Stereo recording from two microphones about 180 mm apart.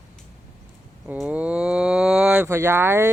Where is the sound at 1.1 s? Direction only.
10° right (ahead or behind).